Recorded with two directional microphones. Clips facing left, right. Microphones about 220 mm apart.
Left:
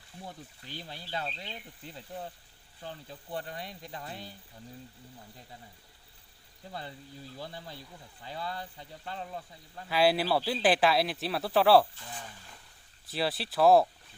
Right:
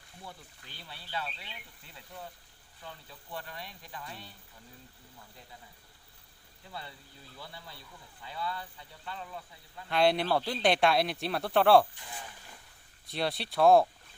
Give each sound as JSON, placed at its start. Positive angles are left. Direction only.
{"t": 0.9, "sound": "speech", "side_deg": 40}
{"t": 6.7, "sound": "speech", "side_deg": 35}
{"t": 9.9, "sound": "speech", "side_deg": 5}
{"t": 13.1, "sound": "speech", "side_deg": 0}